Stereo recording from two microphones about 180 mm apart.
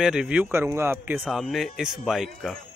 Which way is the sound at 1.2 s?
Centre (ahead or behind).